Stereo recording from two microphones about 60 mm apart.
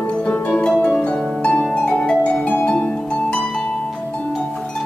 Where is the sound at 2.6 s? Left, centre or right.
Centre.